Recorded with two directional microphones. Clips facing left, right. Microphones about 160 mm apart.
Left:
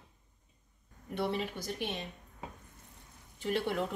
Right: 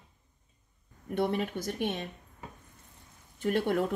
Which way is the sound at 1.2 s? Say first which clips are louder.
Right 4 dB; 50° right (ahead or behind).